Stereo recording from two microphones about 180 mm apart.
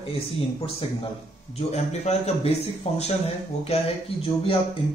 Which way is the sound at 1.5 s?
35° left (ahead or behind).